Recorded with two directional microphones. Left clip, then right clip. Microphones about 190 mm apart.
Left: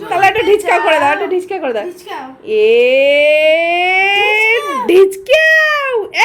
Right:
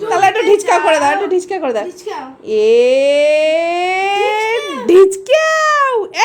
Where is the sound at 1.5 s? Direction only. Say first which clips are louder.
Even; 20° right (ahead or behind).